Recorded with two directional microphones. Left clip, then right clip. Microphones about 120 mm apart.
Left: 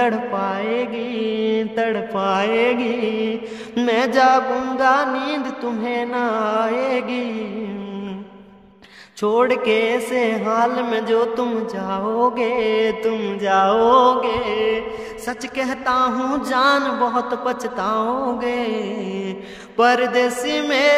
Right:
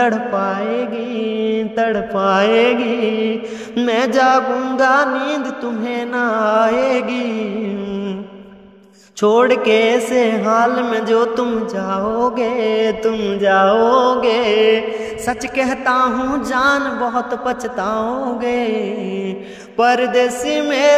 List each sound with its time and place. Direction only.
0.0 s mantra: 25° right (ahead or behind)
3.8 s music: 30° right (ahead or behind)
5.1 s music: 20° right (ahead or behind)
9.2 s music: 35° right (ahead or behind)
11.4 s mantra: 25° right (ahead or behind)
14.2 s music: 65° right (ahead or behind)
15.2 s mantra: 30° right (ahead or behind)
16.2 s mantra: 10° right (ahead or behind)